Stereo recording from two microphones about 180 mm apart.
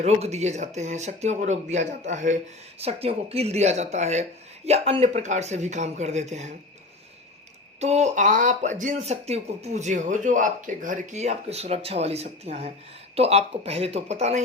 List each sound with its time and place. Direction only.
0.0 s speech: 35° right (ahead or behind)
7.8 s speech: 40° right (ahead or behind)